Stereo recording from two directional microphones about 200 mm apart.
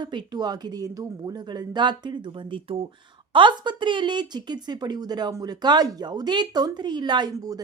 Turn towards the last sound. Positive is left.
turn(degrees=-20)  # may be behind; listen again after turning